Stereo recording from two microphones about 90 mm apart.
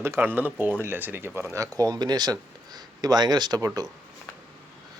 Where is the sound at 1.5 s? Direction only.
40° right (ahead or behind).